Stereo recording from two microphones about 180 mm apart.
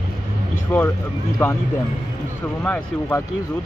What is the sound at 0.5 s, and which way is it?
Speech, 10° left (ahead or behind).